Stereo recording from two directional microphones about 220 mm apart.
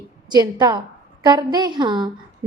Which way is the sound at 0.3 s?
20° right (ahead or behind).